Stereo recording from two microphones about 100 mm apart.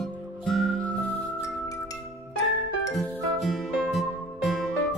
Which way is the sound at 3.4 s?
Centre (ahead or behind).